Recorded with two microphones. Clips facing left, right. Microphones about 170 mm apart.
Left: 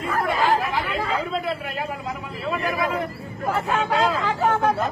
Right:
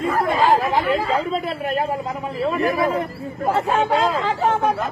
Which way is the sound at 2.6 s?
35° right (ahead or behind).